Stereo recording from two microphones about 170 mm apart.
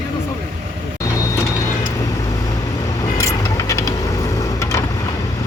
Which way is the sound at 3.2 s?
20° left (ahead or behind).